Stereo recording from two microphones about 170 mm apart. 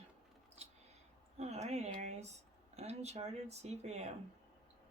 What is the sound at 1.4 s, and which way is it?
Speech, 40° right (ahead or behind).